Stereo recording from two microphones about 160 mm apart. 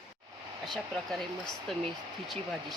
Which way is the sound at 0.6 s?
Centre (ahead or behind).